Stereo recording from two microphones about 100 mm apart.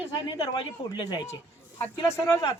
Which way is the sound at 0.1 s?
45° left (ahead or behind).